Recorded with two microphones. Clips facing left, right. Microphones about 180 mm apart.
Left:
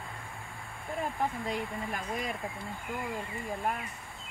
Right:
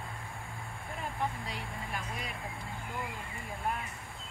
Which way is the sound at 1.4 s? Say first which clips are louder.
Left 7 dB; 45° left (ahead or behind).